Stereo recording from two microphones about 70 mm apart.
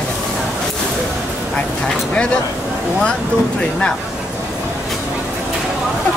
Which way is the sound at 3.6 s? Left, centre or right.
Centre.